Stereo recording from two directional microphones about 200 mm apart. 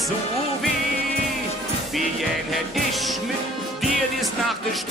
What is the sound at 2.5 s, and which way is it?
Music, centre (ahead or behind).